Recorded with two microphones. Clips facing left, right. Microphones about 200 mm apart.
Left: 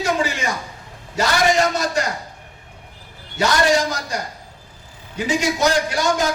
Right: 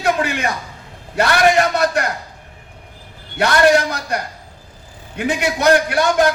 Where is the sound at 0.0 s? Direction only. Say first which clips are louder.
Right 3 dB; 60° right (ahead or behind).